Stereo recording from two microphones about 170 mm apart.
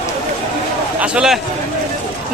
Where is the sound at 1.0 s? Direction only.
5° right (ahead or behind).